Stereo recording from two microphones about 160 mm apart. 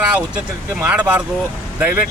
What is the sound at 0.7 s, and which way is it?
Speech, 10° right (ahead or behind).